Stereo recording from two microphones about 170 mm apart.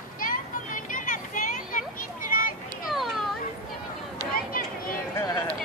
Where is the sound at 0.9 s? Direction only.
50° left (ahead or behind).